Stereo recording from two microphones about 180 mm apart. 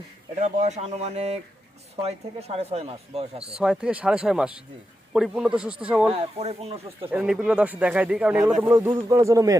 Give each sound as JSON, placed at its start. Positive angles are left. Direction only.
{"t": 0.4, "sound": "speech", "side_deg": -40}
{"t": 3.6, "sound": "speech", "side_deg": -5}
{"t": 6.1, "sound": "speech", "side_deg": -35}
{"t": 7.1, "sound": "speech", "side_deg": -5}